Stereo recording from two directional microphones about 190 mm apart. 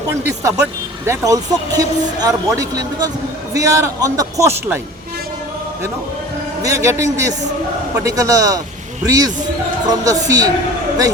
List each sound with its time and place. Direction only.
0.1 s speech: 15° right (ahead or behind)
6.6 s speech: 15° right (ahead or behind)